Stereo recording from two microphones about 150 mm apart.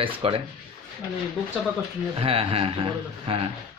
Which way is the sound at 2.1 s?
40° right (ahead or behind).